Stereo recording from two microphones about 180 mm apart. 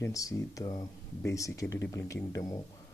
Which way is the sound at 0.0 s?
20° left (ahead or behind).